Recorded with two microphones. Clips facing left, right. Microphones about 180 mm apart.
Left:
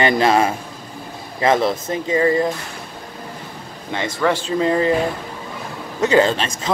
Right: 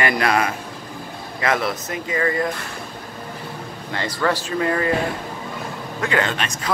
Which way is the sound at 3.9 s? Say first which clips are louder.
Left 3 dB; 20° left (ahead or behind).